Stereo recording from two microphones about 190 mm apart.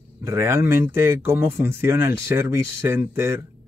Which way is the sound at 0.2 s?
15° right (ahead or behind).